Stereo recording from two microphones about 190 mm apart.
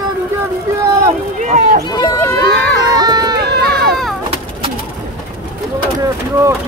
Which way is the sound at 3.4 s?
60° right (ahead or behind).